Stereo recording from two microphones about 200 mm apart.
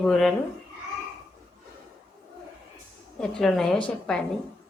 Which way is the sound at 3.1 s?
5° left (ahead or behind).